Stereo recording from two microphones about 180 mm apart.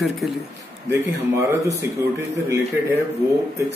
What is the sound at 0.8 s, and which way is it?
Speech, 15° right (ahead or behind).